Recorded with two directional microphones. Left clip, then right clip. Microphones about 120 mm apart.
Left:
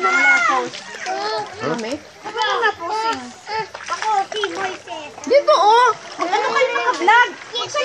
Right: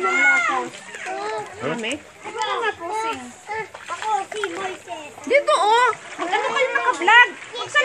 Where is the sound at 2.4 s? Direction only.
20° right (ahead or behind).